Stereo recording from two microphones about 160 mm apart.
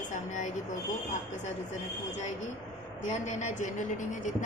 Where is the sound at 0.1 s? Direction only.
50° left (ahead or behind).